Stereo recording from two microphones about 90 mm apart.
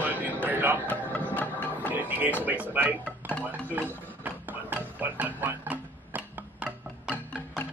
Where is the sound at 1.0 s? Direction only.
20° left (ahead or behind).